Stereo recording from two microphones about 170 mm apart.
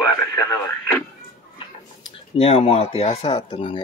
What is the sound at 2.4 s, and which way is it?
Speech, 35° left (ahead or behind).